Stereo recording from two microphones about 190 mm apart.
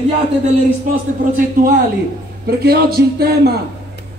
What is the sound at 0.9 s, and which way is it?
Speech, 45° right (ahead or behind).